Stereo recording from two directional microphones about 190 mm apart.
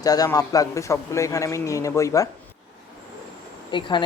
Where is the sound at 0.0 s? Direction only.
20° left (ahead or behind).